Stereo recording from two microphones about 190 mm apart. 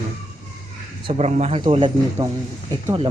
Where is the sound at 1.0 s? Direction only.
35° right (ahead or behind).